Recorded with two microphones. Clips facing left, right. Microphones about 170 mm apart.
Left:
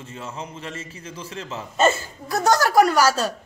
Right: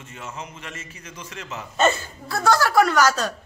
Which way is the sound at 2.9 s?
30° left (ahead or behind).